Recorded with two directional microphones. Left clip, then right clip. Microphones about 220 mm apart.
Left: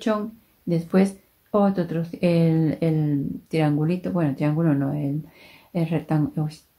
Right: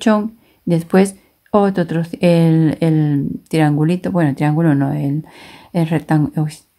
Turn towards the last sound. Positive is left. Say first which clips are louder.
# right 8 dB
turn(degrees=-45)  # may be behind; listen again after turning